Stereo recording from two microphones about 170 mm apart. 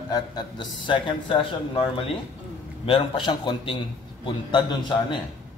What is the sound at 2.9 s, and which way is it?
Speech, 30° left (ahead or behind).